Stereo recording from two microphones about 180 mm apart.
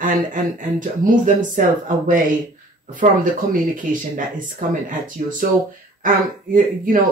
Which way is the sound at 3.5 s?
45° right (ahead or behind).